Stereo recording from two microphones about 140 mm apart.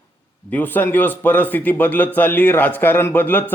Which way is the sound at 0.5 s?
10° left (ahead or behind).